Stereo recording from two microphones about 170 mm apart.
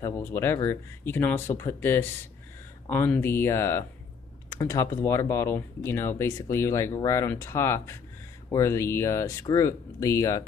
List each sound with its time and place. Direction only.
0.0 s speech: 15° left (ahead or behind)